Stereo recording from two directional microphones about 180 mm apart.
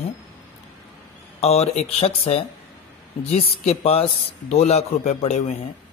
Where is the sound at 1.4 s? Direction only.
35° left (ahead or behind).